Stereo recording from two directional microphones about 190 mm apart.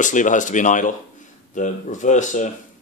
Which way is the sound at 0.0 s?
40° left (ahead or behind).